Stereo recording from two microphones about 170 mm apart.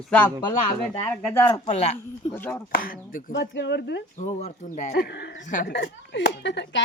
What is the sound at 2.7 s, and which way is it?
Speech, 55° left (ahead or behind).